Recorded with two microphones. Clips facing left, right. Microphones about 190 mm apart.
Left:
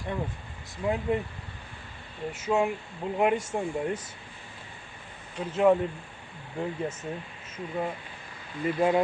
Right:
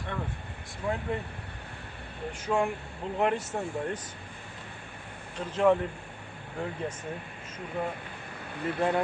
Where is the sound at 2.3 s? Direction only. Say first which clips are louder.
Left 2 dB; 5° left (ahead or behind).